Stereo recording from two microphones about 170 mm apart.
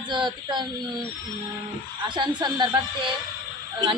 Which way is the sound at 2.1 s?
25° right (ahead or behind).